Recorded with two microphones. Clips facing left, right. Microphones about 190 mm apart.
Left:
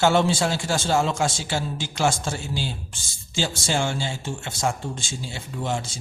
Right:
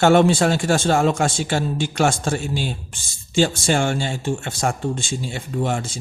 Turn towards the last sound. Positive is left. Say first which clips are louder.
# right 5 dB
turn(degrees=-55)  # may be behind; listen again after turning